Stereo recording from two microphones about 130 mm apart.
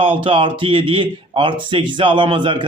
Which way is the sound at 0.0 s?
40° right (ahead or behind).